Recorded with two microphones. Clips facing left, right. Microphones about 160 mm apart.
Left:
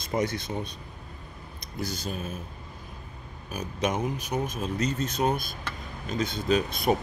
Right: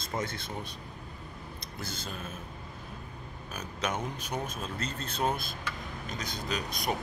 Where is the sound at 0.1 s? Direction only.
20° left (ahead or behind).